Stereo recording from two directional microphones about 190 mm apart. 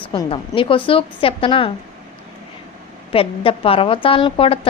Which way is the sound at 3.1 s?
30° left (ahead or behind).